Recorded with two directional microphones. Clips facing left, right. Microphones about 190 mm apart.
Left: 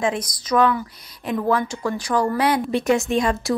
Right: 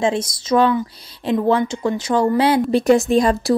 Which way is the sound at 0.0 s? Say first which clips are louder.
Right 4 dB; 25° right (ahead or behind).